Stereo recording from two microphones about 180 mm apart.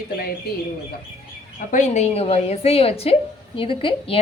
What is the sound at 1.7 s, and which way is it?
A woman's voice, 40° left (ahead or behind).